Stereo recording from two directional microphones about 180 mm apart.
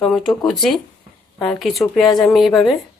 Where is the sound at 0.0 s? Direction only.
Centre (ahead or behind).